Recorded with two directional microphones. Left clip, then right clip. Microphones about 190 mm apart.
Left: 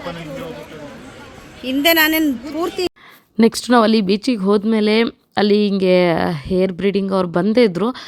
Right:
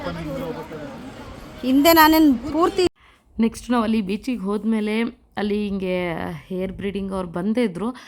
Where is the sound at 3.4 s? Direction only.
20° left (ahead or behind).